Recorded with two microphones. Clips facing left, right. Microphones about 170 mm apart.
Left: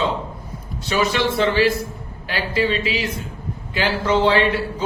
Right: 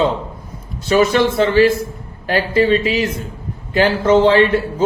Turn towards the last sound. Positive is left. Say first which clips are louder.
# right 6 dB
turn(degrees=-45)  # may be behind; listen again after turning